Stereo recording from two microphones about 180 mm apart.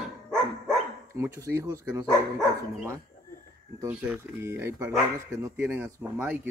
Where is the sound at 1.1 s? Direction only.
15° right (ahead or behind).